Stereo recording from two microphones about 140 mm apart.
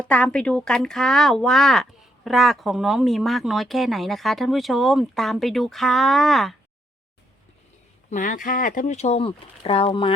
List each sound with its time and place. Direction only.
0.0 s speech: 10° left (ahead or behind)
8.1 s speech: 70° left (ahead or behind); by 10.2 s 40° left (ahead or behind)